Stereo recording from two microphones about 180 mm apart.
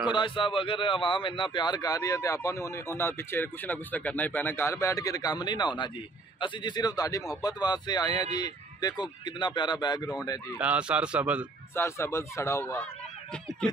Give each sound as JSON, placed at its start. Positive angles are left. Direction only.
{"t": 0.1, "sound": "a man's voice", "side_deg": 30}
{"t": 10.6, "sound": "speech", "side_deg": -5}
{"t": 11.7, "sound": "speech", "side_deg": 15}